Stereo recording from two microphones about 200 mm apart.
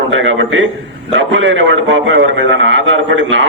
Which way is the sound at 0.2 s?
70° right (ahead or behind).